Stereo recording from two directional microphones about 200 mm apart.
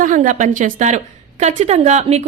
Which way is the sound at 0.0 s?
40° right (ahead or behind).